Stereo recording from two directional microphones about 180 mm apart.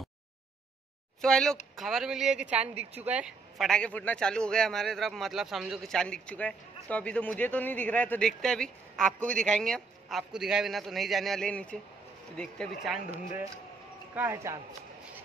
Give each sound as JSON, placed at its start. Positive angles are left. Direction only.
{"t": 1.2, "sound": "a man's voice", "side_deg": 5}
{"t": 2.7, "sound": "speech", "side_deg": -35}
{"t": 3.1, "sound": "a man's voice", "side_deg": -5}
{"t": 14.1, "sound": "speech", "side_deg": -15}